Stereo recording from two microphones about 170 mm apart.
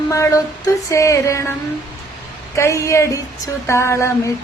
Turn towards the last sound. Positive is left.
turn(degrees=15)  # may be behind; listen again after turning